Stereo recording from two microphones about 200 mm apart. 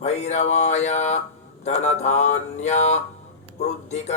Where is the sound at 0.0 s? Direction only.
35° left (ahead or behind).